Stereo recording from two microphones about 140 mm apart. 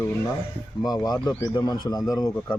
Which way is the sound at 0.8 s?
25° left (ahead or behind).